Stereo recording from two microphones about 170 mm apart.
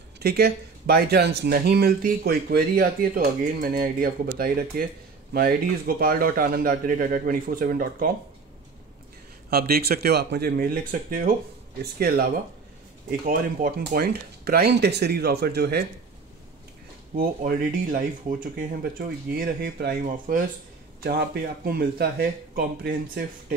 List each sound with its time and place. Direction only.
0.2 s speech: 70° right (ahead or behind)
9.5 s speech: 65° right (ahead or behind)
17.1 s speech: 55° right (ahead or behind)
21.0 s speech: 65° right (ahead or behind)